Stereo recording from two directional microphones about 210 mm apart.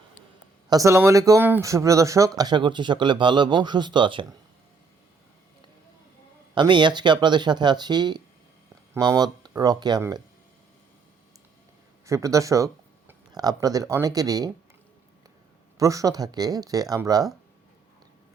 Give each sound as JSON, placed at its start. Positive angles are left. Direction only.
{"t": 0.7, "sound": "speech", "side_deg": -15}
{"t": 6.5, "sound": "speech", "side_deg": -20}
{"t": 12.0, "sound": "speech", "side_deg": -15}
{"t": 15.8, "sound": "speech", "side_deg": -15}